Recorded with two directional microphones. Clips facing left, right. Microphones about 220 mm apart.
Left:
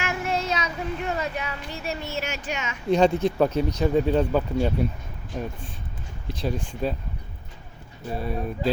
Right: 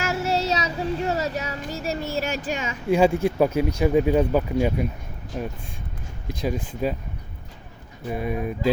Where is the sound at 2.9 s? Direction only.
10° right (ahead or behind).